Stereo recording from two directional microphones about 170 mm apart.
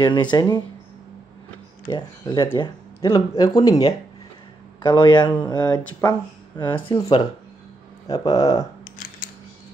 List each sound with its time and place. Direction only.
0.0 s speech: 25° left (ahead or behind)
1.9 s speech: 25° left (ahead or behind)
4.8 s speech: 25° left (ahead or behind)